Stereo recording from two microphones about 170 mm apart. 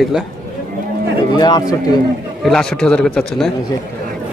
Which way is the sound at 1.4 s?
25° left (ahead or behind).